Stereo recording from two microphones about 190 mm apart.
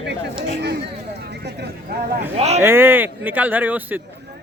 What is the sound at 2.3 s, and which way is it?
Speech, 35° right (ahead or behind).